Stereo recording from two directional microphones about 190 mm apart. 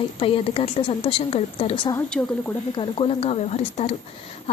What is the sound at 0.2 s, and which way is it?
A woman's voice, 30° left (ahead or behind).